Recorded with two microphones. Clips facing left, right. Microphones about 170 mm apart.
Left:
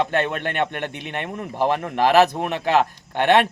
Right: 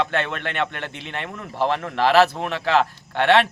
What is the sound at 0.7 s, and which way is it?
A man's voice, 15° left (ahead or behind).